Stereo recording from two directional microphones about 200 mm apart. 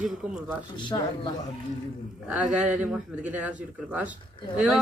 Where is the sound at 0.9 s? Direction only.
20° left (ahead or behind).